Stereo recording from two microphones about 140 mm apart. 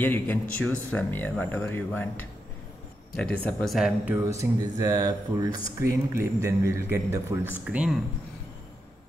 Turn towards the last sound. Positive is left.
turn(degrees=-5)  # may be behind; listen again after turning